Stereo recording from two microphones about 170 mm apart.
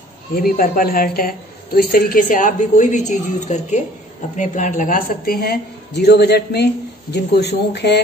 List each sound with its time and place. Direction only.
0.4 s a woman's voice: 55° left (ahead or behind); by 8.0 s 80° left